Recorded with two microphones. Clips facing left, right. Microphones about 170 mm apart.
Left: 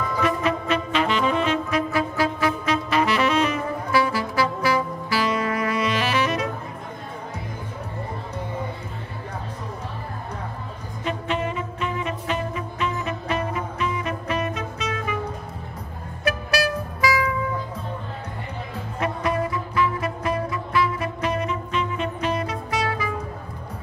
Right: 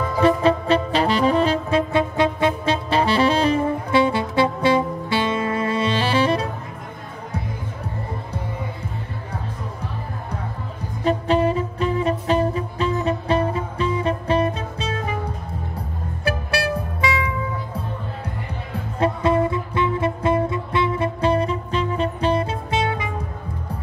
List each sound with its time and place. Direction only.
0.2 s saxophone: 30° right (ahead or behind)
11.1 s music: 35° right (ahead or behind)
16.3 s music: 25° right (ahead or behind)
18.9 s music: 30° right (ahead or behind)